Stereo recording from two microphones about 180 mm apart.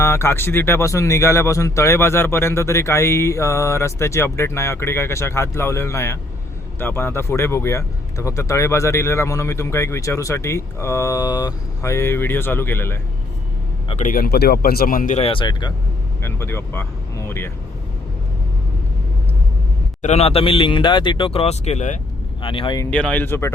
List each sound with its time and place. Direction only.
0.0 s speech: 15° left (ahead or behind)
14.0 s speech: 50° left (ahead or behind); by 15.7 s 25° left (ahead or behind)
16.2 s speech: 15° left (ahead or behind)
20.0 s speech: 40° left (ahead or behind)
22.4 s speech: 30° left (ahead or behind)
22.9 s speech: 5° left (ahead or behind)